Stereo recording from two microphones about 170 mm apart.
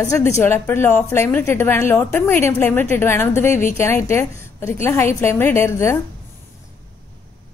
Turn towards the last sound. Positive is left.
turn(degrees=15)  # may be behind; listen again after turning